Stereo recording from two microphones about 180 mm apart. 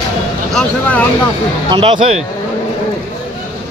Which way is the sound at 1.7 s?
25° right (ahead or behind).